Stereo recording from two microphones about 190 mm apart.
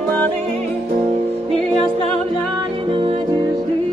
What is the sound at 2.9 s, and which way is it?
Music, 25° right (ahead or behind).